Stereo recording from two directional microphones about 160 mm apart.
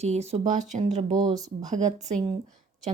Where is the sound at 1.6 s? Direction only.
45° right (ahead or behind).